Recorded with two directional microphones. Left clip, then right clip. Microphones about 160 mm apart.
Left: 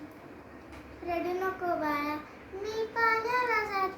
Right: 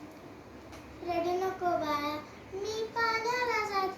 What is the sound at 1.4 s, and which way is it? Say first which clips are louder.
Child singing: even; 15° left (ahead or behind).